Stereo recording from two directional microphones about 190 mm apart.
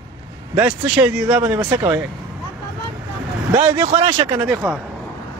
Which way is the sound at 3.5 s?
20° right (ahead or behind).